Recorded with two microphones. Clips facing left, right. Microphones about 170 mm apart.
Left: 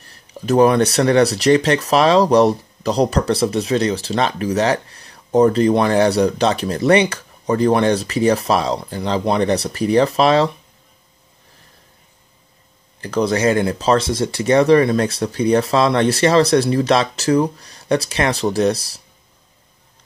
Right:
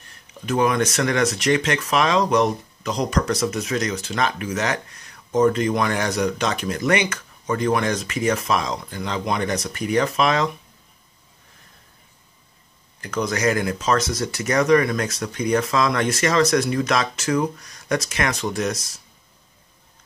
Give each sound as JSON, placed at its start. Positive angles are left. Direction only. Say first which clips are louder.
{"t": 0.0, "sound": "speech", "louder": "left 7 dB", "side_deg": 35}
{"t": 13.0, "sound": "speech", "louder": "left 5 dB", "side_deg": 35}